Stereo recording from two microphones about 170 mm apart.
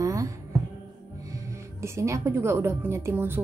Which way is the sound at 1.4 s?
15° right (ahead or behind).